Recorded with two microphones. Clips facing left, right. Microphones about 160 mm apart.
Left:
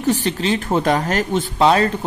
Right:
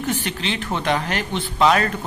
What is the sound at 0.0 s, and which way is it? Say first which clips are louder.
Speech: left 6 dB; 35° left (ahead or behind).